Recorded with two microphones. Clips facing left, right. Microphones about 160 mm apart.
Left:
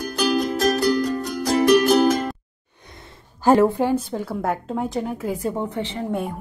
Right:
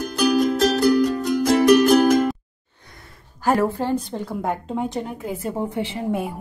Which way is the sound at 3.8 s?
15° left (ahead or behind).